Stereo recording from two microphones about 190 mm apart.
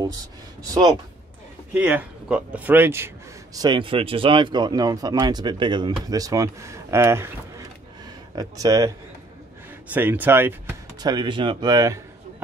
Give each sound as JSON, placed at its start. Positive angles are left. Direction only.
{"t": 1.7, "sound": "speech", "side_deg": -10}
{"t": 3.5, "sound": "speech", "side_deg": -25}
{"t": 9.9, "sound": "speech", "side_deg": -10}
{"t": 11.0, "sound": "speech", "side_deg": -20}